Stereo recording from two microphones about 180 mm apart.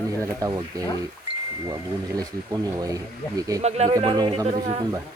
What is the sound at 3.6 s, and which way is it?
Speech, 35° right (ahead or behind).